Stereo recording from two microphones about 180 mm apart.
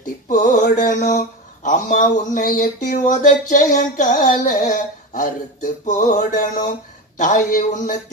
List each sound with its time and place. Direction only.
0.3 s mantra: 45° left (ahead or behind)